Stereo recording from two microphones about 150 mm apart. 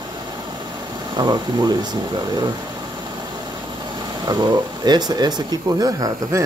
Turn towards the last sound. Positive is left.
turn(degrees=-25)  # may be behind; listen again after turning